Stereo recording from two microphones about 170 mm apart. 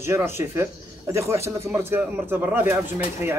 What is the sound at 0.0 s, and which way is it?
Speech, 15° right (ahead or behind).